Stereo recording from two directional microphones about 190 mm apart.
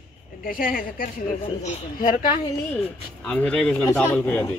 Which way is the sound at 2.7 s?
10° left (ahead or behind).